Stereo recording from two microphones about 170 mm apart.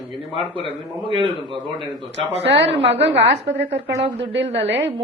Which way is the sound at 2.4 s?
90° right.